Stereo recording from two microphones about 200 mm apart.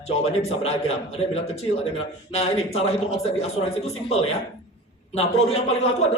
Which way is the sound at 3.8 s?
30° left (ahead or behind).